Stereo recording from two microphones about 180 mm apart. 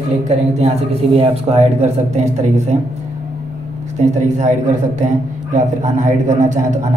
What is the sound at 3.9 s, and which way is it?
A man's voice, 40° right (ahead or behind).